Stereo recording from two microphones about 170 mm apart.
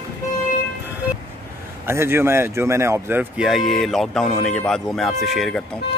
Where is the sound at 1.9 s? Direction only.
15° right (ahead or behind).